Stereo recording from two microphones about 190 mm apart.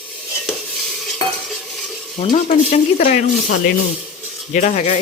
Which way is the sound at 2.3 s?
40° left (ahead or behind).